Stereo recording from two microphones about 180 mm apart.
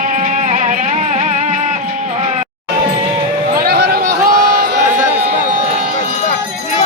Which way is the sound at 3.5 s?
55° right (ahead or behind).